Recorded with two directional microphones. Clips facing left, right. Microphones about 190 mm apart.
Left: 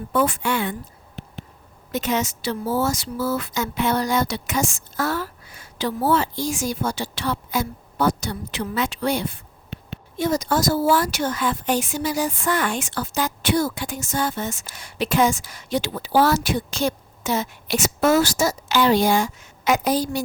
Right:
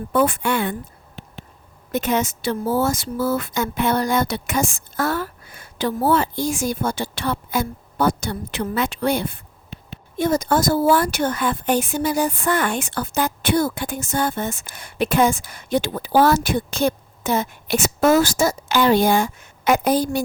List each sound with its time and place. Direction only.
0.1 s a woman's voice: 55° right (ahead or behind)
1.9 s a woman's voice: 55° right (ahead or behind)